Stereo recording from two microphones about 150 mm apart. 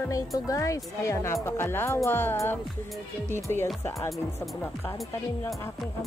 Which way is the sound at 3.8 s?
20° left (ahead or behind).